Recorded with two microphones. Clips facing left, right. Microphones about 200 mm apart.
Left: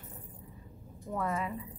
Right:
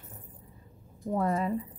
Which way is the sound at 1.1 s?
35° right (ahead or behind).